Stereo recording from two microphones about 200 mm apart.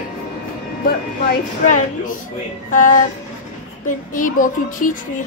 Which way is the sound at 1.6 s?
40° left (ahead or behind).